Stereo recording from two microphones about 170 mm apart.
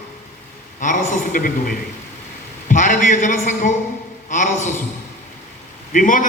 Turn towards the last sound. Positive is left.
turn(degrees=50)  # may be behind; listen again after turning